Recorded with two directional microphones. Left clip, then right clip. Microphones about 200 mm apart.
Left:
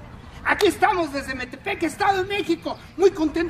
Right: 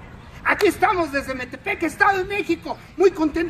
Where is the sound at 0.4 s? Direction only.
Centre (ahead or behind).